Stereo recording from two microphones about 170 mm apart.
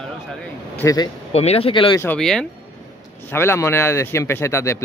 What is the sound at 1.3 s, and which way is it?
Speech, 35° left (ahead or behind).